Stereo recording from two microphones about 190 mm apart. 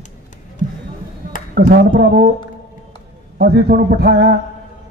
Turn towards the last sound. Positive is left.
turn(degrees=-55)  # may be behind; listen again after turning